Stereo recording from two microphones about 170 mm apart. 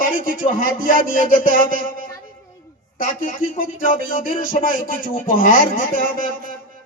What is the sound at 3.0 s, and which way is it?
Speech, 55° left (ahead or behind).